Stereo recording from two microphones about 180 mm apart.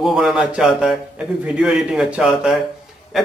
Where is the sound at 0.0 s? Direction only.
Centre (ahead or behind).